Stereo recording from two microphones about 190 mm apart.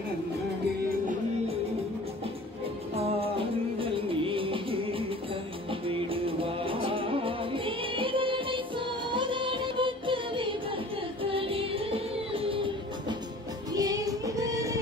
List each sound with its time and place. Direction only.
3.0 s music: 30° right (ahead or behind)
13.7 s music: 20° right (ahead or behind)